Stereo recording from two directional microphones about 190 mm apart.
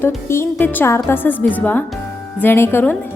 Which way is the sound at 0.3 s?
15° left (ahead or behind).